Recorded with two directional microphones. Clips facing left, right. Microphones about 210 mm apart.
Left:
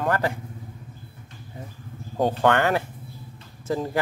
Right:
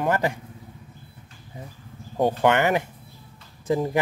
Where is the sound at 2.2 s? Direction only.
15° right (ahead or behind).